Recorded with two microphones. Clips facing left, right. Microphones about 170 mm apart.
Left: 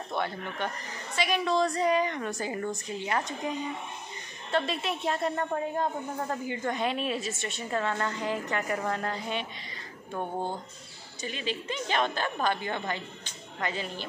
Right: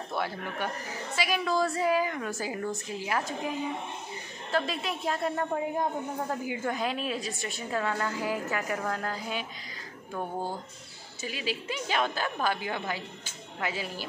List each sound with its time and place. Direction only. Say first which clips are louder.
0.1 s a woman's voice: left 1 dB; 5° right (ahead or behind)
11.2 s a woman's voice: even; 5° right (ahead or behind)